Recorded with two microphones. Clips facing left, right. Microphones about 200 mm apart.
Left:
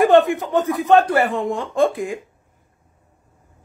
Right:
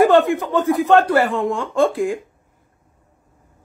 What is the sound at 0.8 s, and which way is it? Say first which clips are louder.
A man's voice: left 1 dB; 15° left (ahead or behind).